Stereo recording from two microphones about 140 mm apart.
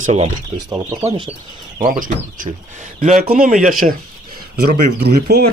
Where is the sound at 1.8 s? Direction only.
85° right.